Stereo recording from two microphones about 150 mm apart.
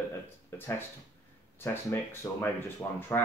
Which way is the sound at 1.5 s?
15° left (ahead or behind).